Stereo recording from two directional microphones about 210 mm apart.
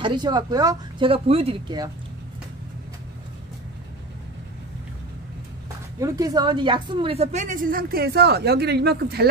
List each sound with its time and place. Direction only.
0.0 s speech: 20° right (ahead or behind)
5.9 s a woman's voice: 15° right (ahead or behind); by 9.3 s 50° right (ahead or behind)